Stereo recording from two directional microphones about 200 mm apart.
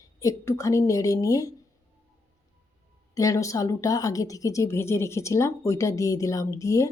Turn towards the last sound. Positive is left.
turn(degrees=15)  # may be behind; listen again after turning